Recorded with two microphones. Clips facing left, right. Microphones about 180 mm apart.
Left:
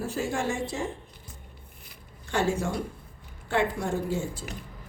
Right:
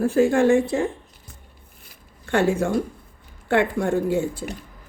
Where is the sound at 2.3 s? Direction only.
60° right (ahead or behind).